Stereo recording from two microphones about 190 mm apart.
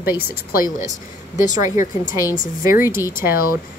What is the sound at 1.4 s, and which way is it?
Speech, 40° left (ahead or behind).